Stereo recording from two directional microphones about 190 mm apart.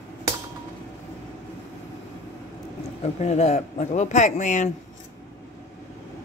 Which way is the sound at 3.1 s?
35° left (ahead or behind).